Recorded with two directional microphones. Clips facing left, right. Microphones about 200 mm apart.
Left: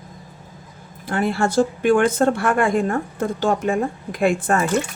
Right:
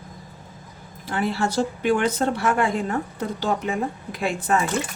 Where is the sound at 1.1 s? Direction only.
50° left (ahead or behind).